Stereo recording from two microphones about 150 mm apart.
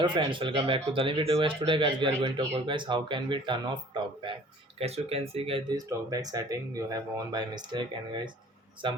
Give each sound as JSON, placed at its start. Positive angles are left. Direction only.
{"t": 0.0, "sound": "a man's voice", "side_deg": -35}
{"t": 5.7, "sound": "a man's voice", "side_deg": -25}